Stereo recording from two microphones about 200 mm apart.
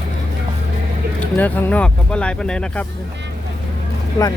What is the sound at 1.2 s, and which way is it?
Speech, 10° left (ahead or behind).